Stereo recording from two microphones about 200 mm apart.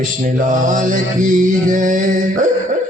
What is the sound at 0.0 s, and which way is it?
Mantra, 40° right (ahead or behind).